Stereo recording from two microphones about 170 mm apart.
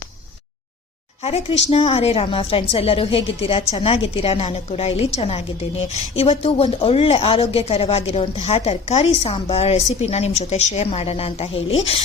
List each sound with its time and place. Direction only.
1.2 s a woman's voice: 35° left (ahead or behind)